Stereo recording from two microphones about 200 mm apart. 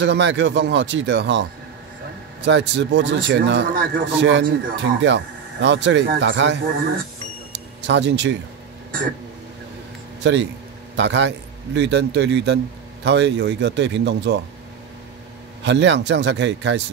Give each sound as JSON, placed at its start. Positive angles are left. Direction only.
{"t": 0.0, "sound": "speech", "side_deg": -60}
{"t": 7.8, "sound": "speech", "side_deg": -60}
{"t": 10.2, "sound": "speech", "side_deg": -60}
{"t": 15.6, "sound": "speech", "side_deg": -60}